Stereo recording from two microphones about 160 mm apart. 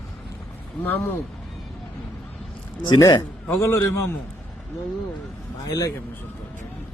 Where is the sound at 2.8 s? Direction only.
25° left (ahead or behind).